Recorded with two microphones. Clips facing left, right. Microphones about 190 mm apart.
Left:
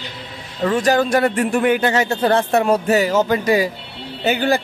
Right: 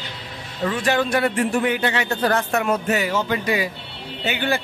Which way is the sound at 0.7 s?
40° left (ahead or behind).